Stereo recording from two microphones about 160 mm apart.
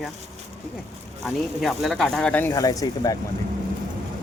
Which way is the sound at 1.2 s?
Centre (ahead or behind).